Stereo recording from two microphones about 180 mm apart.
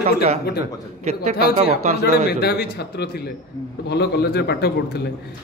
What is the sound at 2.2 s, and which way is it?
A man's voice, 65° left (ahead or behind).